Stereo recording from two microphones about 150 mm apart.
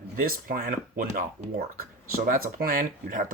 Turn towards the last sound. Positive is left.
turn(degrees=-65)  # may be behind; listen again after turning